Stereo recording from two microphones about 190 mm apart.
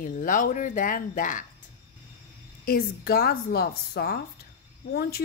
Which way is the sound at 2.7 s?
55° left (ahead or behind).